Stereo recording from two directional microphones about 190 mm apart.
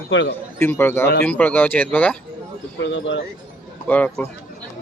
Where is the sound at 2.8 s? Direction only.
70° left (ahead or behind).